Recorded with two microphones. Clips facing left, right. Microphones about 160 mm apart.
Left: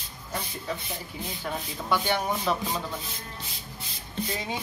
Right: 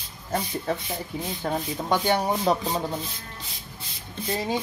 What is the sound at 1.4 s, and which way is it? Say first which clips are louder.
Music: right 6 dB; 40° right (ahead or behind).